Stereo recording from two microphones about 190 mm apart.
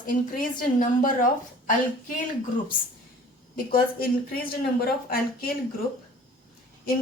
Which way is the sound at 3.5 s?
50° left (ahead or behind).